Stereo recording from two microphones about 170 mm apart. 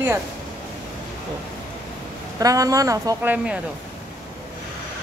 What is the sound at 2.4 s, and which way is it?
Speech, 20° right (ahead or behind).